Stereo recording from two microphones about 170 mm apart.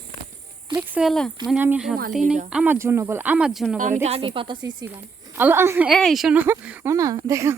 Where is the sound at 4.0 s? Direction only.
35° right (ahead or behind).